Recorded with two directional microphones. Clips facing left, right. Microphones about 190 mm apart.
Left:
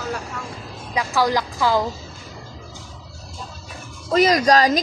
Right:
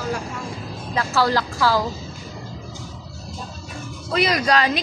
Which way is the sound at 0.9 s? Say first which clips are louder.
Even; 15° left (ahead or behind).